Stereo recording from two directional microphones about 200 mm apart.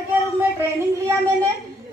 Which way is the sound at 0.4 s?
10° right (ahead or behind).